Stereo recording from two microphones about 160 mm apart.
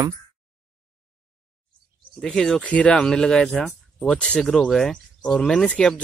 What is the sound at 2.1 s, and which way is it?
Speech, centre (ahead or behind).